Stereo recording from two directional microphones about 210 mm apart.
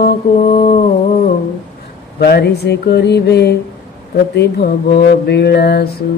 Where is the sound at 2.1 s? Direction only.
50° left (ahead or behind).